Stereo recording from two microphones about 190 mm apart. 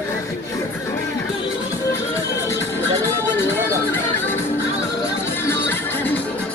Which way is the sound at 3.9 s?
10° left (ahead or behind).